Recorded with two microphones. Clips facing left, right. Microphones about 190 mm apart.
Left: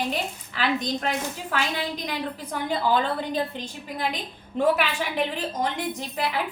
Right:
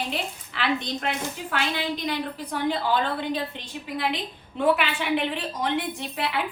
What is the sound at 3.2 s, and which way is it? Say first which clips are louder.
A woman's voice: left 1 dB; 40° left (ahead or behind).